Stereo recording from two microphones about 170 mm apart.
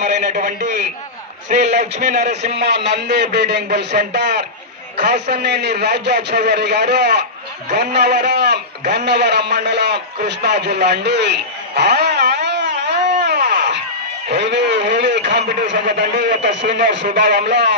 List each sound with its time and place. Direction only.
0.0 s a man's voice: 50° right (ahead or behind)
2.5 s a man's voice: 85° right
8.9 s a sound: 80° right
14.3 s a man's voice: 90° right